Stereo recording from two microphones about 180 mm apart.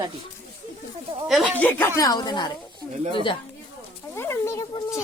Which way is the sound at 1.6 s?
10° left (ahead or behind).